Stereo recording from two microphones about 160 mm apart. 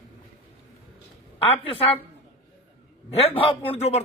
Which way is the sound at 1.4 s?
35° left (ahead or behind).